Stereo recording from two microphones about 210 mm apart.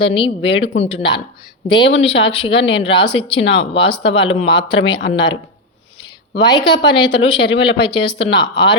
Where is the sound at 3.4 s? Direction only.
60° left (ahead or behind).